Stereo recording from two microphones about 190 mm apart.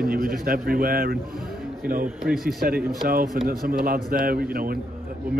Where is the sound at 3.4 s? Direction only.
50° right (ahead or behind).